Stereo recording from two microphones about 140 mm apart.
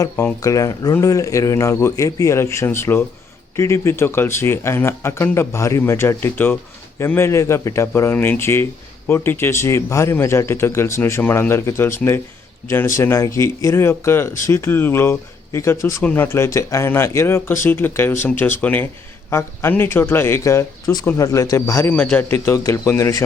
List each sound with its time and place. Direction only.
0.3 s a man's voice: 25° left (ahead or behind)